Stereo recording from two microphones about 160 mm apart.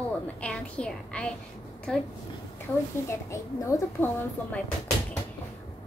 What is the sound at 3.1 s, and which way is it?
A child's voice, 20° left (ahead or behind).